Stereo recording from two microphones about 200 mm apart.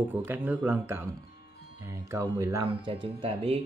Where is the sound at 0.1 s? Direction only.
10° right (ahead or behind).